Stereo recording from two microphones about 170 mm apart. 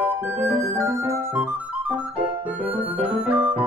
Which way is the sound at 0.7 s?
15° right (ahead or behind).